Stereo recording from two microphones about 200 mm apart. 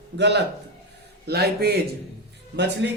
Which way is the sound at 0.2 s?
60° right (ahead or behind).